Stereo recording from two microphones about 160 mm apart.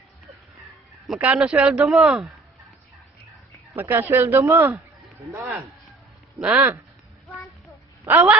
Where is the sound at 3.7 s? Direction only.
15° right (ahead or behind).